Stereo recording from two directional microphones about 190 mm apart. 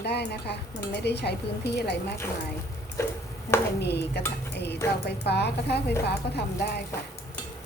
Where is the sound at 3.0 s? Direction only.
15° left (ahead or behind).